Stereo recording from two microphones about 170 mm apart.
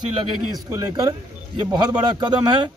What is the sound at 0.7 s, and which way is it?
Speech, 20° right (ahead or behind).